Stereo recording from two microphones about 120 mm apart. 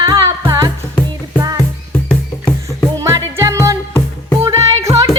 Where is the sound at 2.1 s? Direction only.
10° left (ahead or behind).